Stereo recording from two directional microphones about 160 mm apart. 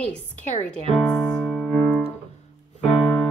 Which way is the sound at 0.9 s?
5° left (ahead or behind).